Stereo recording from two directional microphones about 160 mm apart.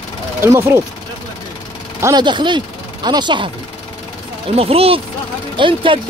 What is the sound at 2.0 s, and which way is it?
Speech, 20° right (ahead or behind).